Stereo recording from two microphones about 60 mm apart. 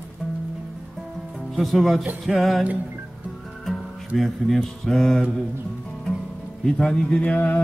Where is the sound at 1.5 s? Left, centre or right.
Centre.